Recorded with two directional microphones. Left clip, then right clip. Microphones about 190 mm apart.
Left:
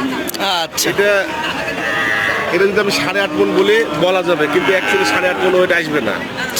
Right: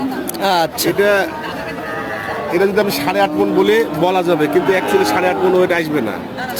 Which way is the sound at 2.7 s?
65° right (ahead or behind).